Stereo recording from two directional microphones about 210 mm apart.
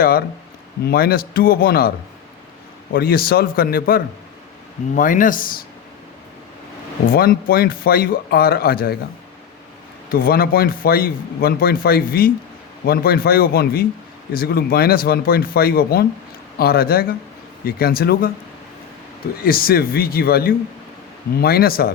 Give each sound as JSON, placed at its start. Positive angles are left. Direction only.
{"t": 0.0, "sound": "speech", "side_deg": 45}
{"t": 2.9, "sound": "speech", "side_deg": 45}
{"t": 7.1, "sound": "speech", "side_deg": 45}
{"t": 10.1, "sound": "speech", "side_deg": 45}
{"t": 19.4, "sound": "speech", "side_deg": 45}